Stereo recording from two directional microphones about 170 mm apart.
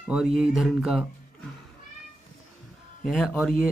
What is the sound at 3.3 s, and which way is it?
Speech, 5° left (ahead or behind).